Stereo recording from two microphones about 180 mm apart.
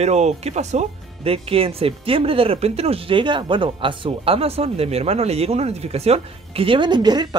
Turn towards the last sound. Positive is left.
turn(degrees=-25)  # may be behind; listen again after turning